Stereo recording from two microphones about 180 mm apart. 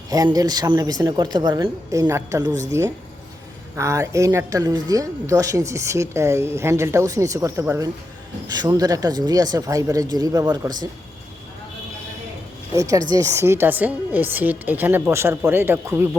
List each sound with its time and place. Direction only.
0.1 s a woman's voice: 20° right (ahead or behind)
12.7 s speech: 20° right (ahead or behind)